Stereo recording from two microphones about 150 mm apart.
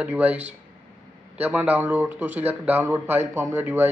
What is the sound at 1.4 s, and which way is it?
Speech, 10° right (ahead or behind).